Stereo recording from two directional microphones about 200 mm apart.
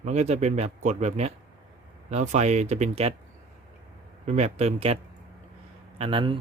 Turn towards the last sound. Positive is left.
turn(degrees=-25)  # may be behind; listen again after turning